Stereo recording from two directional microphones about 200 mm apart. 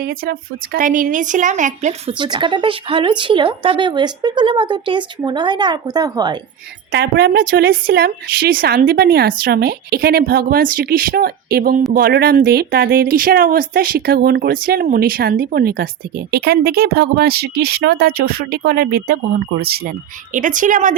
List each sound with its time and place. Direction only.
0.0 s a woman's voice: 50° right (ahead or behind); by 6.4 s 20° right (ahead or behind)
6.9 s speech: 50° right (ahead or behind)